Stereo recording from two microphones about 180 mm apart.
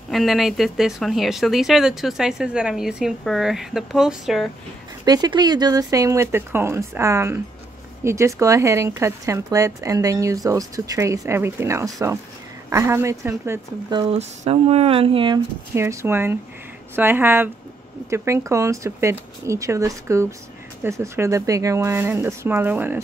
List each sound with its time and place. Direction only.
0.1 s speech: centre (ahead or behind)
5.0 s speech: 20° right (ahead or behind)
14.1 s speech: 35° right (ahead or behind)
15.7 s speech: 15° right (ahead or behind)